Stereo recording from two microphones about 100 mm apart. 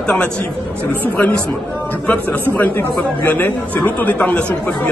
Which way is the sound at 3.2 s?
20° left (ahead or behind).